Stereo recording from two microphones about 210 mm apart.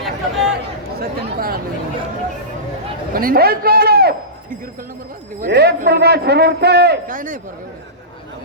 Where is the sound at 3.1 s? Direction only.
45° right (ahead or behind).